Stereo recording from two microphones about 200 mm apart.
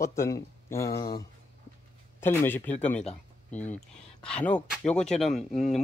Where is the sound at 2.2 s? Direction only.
10° left (ahead or behind).